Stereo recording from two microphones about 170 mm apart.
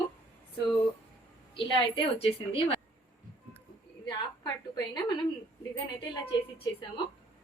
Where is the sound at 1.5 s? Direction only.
30° left (ahead or behind).